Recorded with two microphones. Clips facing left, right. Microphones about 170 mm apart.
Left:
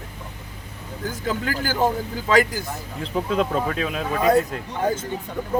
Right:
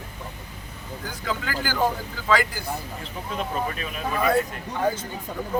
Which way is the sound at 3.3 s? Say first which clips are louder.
Left 4 dB; 90° left.